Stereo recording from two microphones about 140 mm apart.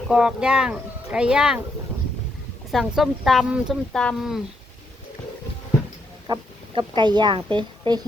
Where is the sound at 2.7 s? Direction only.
Centre (ahead or behind).